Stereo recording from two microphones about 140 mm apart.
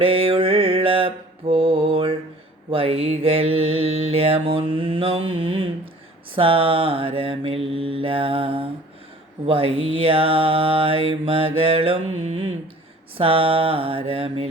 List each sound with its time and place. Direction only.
0.0 s mantra: 40° right (ahead or behind)